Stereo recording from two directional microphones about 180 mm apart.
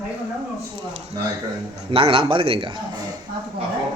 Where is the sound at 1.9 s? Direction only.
30° right (ahead or behind).